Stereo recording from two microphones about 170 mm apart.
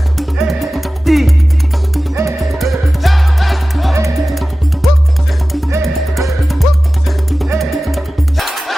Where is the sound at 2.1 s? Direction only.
15° right (ahead or behind).